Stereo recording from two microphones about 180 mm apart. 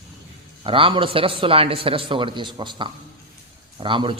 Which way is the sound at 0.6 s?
30° right (ahead or behind).